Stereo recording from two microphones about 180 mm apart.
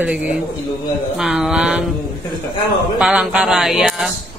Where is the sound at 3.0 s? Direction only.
5° right (ahead or behind).